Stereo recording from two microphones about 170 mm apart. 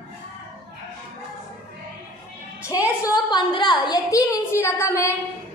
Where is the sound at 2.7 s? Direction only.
20° left (ahead or behind).